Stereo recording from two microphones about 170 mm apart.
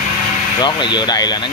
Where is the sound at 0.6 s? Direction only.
25° left (ahead or behind).